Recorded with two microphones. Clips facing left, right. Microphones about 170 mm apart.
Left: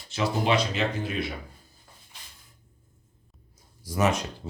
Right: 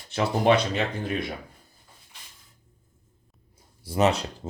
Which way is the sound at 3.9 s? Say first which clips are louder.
Right 3 dB; 30° right (ahead or behind).